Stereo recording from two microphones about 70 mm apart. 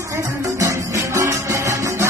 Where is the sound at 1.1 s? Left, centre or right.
Right.